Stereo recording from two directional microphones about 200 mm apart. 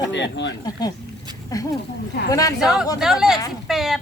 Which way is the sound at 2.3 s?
15° left (ahead or behind).